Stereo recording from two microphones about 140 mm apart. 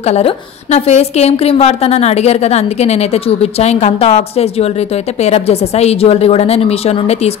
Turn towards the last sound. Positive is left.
turn(degrees=50)  # may be behind; listen again after turning